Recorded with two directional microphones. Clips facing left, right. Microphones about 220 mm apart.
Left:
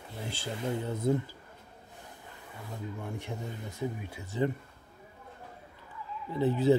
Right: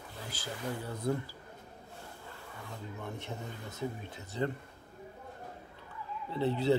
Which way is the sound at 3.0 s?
15° left (ahead or behind).